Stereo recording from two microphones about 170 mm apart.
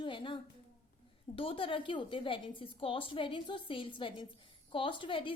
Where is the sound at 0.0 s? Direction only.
30° left (ahead or behind).